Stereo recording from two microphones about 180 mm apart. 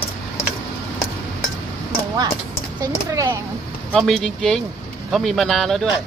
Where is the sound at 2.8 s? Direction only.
20° right (ahead or behind).